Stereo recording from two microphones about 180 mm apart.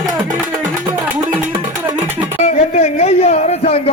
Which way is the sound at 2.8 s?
35° left (ahead or behind).